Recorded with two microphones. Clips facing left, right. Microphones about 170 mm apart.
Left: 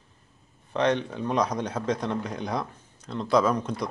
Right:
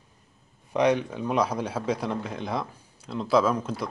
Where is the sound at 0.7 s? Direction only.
10° right (ahead or behind).